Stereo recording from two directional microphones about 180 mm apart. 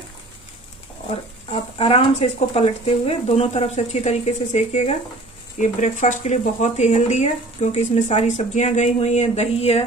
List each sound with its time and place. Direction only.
1.1 s speech: 30° left (ahead or behind)